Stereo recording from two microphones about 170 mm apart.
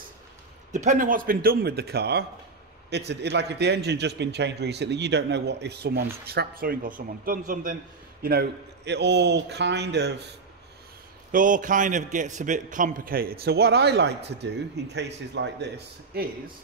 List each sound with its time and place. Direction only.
0.7 s a man's voice: 45° right (ahead or behind); by 2.2 s 70° right (ahead or behind)
3.1 s a man's voice: 90° right; by 7.7 s 55° right (ahead or behind)
8.2 s a man's voice: 70° right (ahead or behind)
11.3 s a man's voice: 50° right (ahead or behind); by 15.7 s 90° right
16.1 s a man's voice: 65° right (ahead or behind)